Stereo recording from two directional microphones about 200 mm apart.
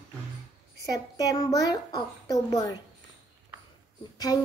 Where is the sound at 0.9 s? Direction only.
15° left (ahead or behind).